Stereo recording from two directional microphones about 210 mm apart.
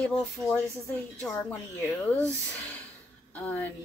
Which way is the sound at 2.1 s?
5° left (ahead or behind).